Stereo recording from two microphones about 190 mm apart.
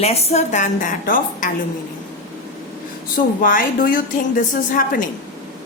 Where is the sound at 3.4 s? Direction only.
45° left (ahead or behind).